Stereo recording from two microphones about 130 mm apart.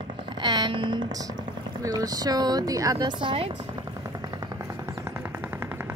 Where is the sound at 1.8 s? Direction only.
30° right (ahead or behind); by 3.5 s 45° right (ahead or behind).